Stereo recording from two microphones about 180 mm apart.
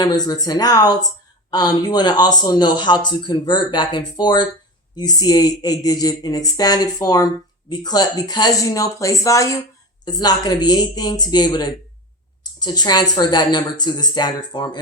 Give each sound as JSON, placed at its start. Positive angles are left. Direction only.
{"t": 0.0, "sound": "speech", "side_deg": 20}